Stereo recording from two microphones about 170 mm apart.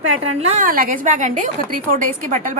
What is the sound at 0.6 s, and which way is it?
A woman's voice, 55° right (ahead or behind).